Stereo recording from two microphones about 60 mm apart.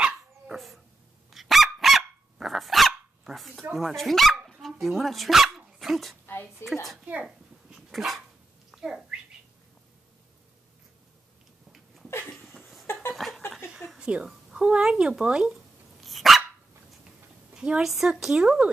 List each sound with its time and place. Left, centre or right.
1.3 s dog: centre
3.7 s speech: centre
6.2 s a sound: left
6.6 s speech: centre
7.2 s dog: centre
8.7 s bird: centre
11.7 s a sound: centre
12.4 s laughter: centre
13.1 s a sound: centre
13.9 s speech: centre
16.0 s dog: centre
17.6 s a woman's voice: centre